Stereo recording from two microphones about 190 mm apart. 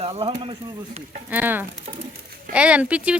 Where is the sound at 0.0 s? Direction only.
30° right (ahead or behind).